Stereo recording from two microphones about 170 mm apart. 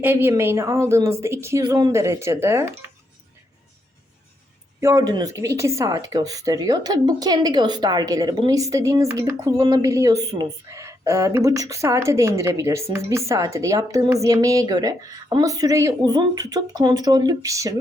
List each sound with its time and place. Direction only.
0.0 s a woman's voice: 10° right (ahead or behind)
4.8 s speech: 20° right (ahead or behind)